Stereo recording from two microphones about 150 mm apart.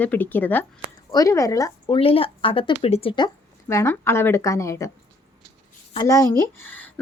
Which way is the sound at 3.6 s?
15° left (ahead or behind).